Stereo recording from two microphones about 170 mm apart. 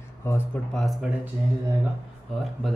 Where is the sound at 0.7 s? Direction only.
Centre (ahead or behind).